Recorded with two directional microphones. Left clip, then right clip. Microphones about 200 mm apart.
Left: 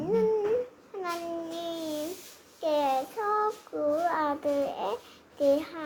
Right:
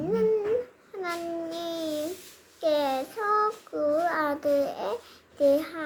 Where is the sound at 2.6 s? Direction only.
25° right (ahead or behind).